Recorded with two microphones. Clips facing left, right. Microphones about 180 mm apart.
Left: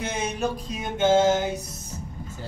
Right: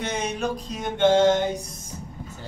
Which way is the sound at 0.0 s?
5° left (ahead or behind).